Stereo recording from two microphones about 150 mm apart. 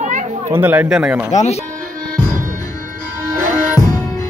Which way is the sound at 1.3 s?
45° left (ahead or behind).